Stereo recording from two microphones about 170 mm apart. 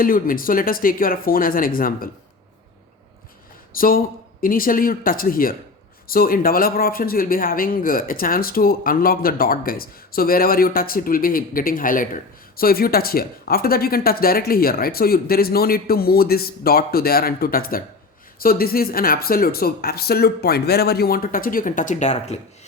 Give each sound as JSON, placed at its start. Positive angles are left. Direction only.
{"t": 0.0, "sound": "speech", "side_deg": 55}
{"t": 3.7, "sound": "speech", "side_deg": 55}